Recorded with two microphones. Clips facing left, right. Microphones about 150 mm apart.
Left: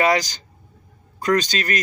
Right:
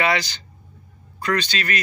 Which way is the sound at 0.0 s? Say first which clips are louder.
Left 3 dB; 40° left (ahead or behind).